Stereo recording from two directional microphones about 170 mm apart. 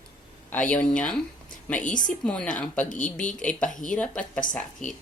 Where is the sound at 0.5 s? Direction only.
10° left (ahead or behind).